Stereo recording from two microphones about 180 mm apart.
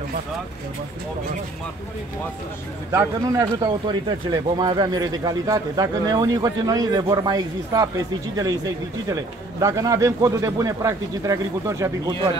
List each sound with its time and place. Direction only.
2.9 s a man's voice: 15° right (ahead or behind)